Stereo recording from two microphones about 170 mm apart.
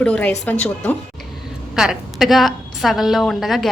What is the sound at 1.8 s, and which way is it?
A woman's voice, centre (ahead or behind).